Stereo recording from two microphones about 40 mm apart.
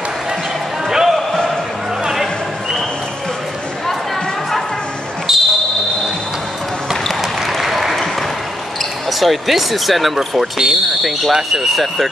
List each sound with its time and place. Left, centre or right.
0.8 s basketball bounce: centre
5.3 s basketball bounce: centre
7.1 s applause: centre
9.2 s speech: centre